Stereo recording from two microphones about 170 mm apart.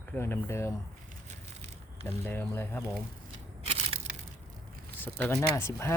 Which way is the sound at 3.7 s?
35° right (ahead or behind).